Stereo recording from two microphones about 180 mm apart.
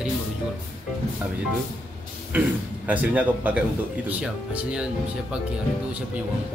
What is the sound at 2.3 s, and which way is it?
Speech, 10° right (ahead or behind).